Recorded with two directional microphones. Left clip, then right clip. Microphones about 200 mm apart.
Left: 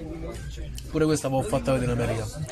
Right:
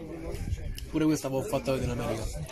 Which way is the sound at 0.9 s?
20° left (ahead or behind).